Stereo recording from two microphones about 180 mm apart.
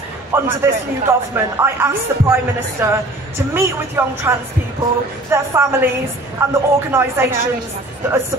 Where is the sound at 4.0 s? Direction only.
15° right (ahead or behind).